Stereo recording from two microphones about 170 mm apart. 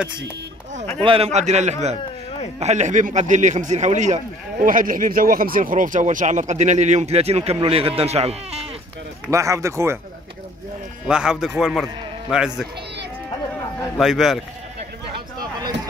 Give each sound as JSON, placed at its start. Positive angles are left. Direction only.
{"t": 1.0, "sound": "a man's voice", "side_deg": -35}
{"t": 9.3, "sound": "speech", "side_deg": -20}
{"t": 11.1, "sound": "speech", "side_deg": -5}
{"t": 13.9, "sound": "speech", "side_deg": 0}